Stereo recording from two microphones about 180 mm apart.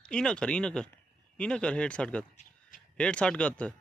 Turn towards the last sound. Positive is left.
turn(degrees=5)  # may be behind; listen again after turning